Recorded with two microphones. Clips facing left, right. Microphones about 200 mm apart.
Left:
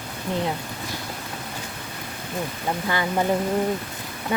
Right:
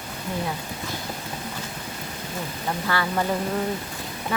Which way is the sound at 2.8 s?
20° left (ahead or behind).